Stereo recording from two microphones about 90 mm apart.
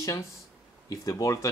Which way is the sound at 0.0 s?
35° left (ahead or behind).